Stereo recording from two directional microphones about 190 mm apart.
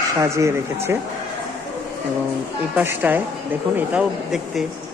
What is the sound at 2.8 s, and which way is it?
Speech, 10° right (ahead or behind).